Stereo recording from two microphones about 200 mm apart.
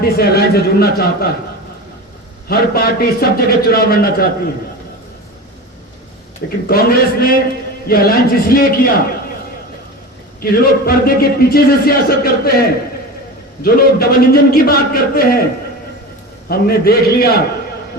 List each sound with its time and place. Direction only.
0.0 s speech: 50° left (ahead or behind)
2.5 s speech: 50° left (ahead or behind)
6.7 s speech: 50° left (ahead or behind)
10.5 s speech: 50° left (ahead or behind)
16.5 s speech: 50° left (ahead or behind)